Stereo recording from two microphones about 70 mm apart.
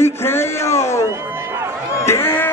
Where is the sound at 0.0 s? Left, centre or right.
Left.